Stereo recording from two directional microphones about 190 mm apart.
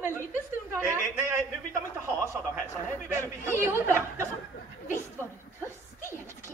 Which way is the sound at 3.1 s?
15° right (ahead or behind).